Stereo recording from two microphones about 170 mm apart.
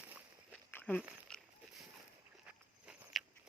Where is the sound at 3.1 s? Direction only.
Centre (ahead or behind).